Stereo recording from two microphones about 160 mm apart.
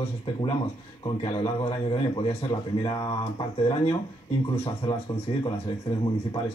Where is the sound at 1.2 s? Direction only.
35° left (ahead or behind).